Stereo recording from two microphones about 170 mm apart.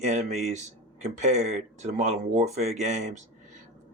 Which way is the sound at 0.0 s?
40° right (ahead or behind).